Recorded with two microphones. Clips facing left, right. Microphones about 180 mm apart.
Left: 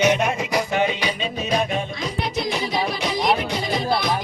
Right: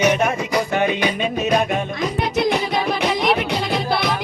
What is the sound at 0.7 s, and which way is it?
Music, 50° right (ahead or behind).